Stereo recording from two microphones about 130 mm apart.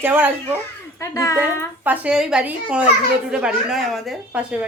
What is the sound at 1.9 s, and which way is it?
Speech, 5° right (ahead or behind).